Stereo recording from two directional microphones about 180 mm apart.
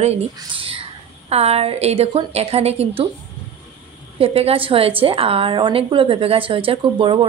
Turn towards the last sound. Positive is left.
turn(degrees=-25)  # may be behind; listen again after turning